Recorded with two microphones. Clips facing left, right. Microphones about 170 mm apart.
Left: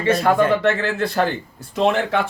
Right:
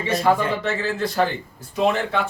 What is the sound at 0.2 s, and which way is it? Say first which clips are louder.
Speech: left 3 dB; 60° left (ahead or behind).